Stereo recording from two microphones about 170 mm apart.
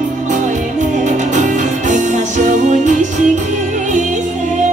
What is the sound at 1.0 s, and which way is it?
Music, 45° right (ahead or behind).